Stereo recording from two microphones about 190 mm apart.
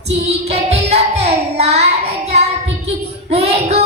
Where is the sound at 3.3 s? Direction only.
35° right (ahead or behind).